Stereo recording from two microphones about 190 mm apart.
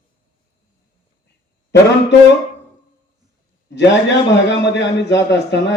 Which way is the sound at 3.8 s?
65° left (ahead or behind).